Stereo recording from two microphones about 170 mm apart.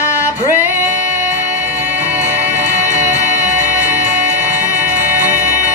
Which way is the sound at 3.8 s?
10° right (ahead or behind).